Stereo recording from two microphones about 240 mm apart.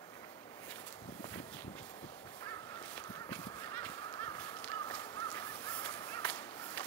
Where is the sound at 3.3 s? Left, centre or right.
Centre.